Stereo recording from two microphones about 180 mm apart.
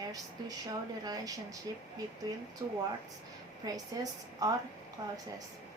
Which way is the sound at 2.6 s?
20° right (ahead or behind).